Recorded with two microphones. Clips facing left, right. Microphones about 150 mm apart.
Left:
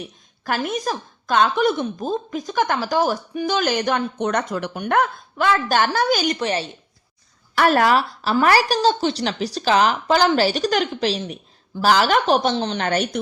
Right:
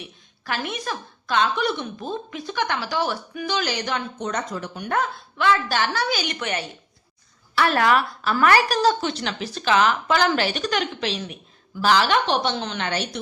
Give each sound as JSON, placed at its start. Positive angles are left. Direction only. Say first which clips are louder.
{"t": 0.0, "sound": "a sound", "louder": "left 6 dB", "side_deg": 45}
{"t": 0.7, "sound": "speech", "louder": "left 5 dB", "side_deg": 40}
{"t": 5.4, "sound": "speech", "louder": "left 3 dB", "side_deg": 45}
{"t": 6.4, "sound": "a woman's voice", "louder": "left 5 dB", "side_deg": 30}
{"t": 7.5, "sound": "a woman's voice", "louder": "left 3 dB", "side_deg": 45}